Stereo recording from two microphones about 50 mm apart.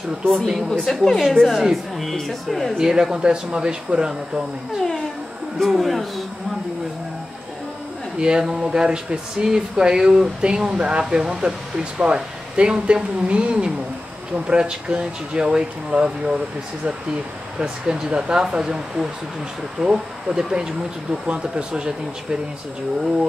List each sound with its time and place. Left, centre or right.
0.7 s a woman's voice: centre
2.8 s speech: centre
5.6 s a woman's voice: centre
8.2 s speech: centre
17.6 s speech: centre